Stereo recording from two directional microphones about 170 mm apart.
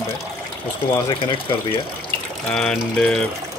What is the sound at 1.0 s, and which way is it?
Speech, 25° left (ahead or behind).